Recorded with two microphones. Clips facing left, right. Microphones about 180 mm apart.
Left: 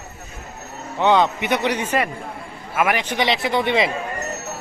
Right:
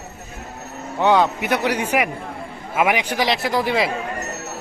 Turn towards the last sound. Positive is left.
turn(degrees=0)  # may be behind; listen again after turning